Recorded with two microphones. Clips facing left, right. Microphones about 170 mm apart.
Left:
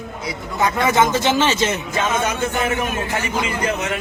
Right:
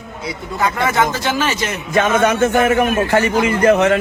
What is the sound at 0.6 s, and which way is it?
Speech, 20° left (ahead or behind).